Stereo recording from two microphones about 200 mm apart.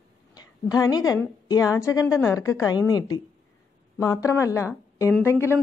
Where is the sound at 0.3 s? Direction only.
20° left (ahead or behind).